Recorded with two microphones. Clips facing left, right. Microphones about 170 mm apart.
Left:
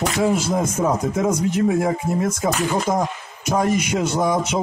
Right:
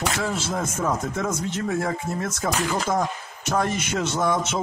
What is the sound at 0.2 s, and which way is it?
A man's voice, 15° left (ahead or behind).